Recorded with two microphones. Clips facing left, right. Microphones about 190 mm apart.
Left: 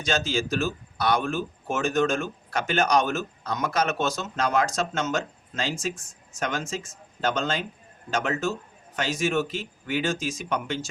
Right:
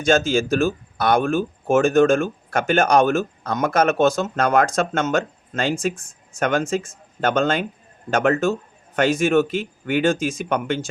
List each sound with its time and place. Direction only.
0.0 s speech: 50° right (ahead or behind)